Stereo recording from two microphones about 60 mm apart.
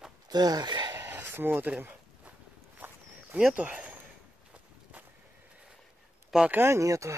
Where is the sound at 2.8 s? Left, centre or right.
Right.